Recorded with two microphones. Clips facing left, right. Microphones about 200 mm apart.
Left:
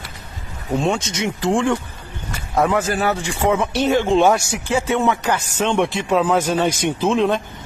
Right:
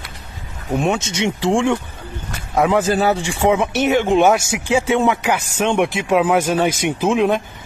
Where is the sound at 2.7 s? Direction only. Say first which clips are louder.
Right 3 dB; 20° right (ahead or behind).